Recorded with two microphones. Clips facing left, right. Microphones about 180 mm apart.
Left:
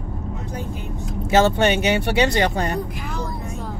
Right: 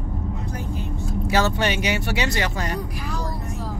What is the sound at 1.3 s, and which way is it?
Speech, 25° left (ahead or behind).